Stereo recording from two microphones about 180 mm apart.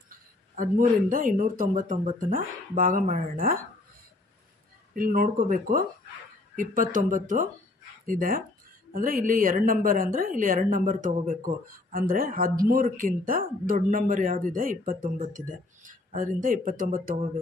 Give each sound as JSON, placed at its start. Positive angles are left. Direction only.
{"t": 1.0, "sound": "a woman's voice", "side_deg": -50}
{"t": 4.9, "sound": "a woman's voice", "side_deg": -50}